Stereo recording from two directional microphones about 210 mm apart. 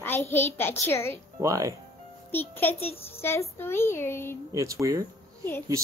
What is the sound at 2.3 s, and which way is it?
A woman's voice, 10° left (ahead or behind).